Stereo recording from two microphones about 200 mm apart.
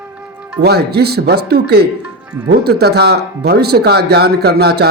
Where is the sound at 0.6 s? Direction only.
55° right (ahead or behind).